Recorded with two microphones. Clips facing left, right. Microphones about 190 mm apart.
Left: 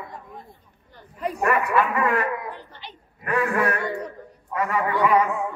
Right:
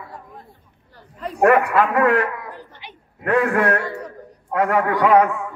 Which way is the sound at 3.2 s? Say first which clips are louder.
Right 5 dB; 55° right (ahead or behind).